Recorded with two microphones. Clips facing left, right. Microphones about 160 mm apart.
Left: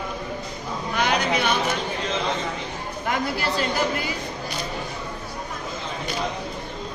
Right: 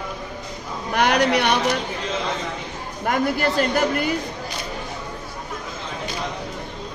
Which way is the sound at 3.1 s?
50° right (ahead or behind).